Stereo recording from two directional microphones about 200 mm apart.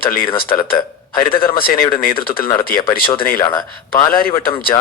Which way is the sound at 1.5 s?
45° left (ahead or behind).